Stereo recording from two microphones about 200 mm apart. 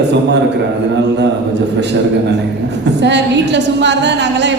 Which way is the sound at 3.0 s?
60° right (ahead or behind).